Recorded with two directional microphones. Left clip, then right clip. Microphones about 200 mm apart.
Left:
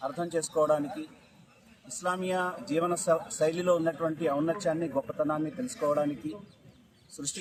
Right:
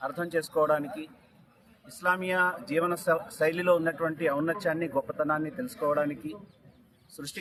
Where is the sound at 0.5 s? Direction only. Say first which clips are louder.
Even; 10° right (ahead or behind).